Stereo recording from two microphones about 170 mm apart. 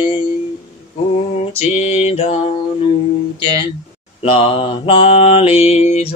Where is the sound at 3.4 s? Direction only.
30° left (ahead or behind).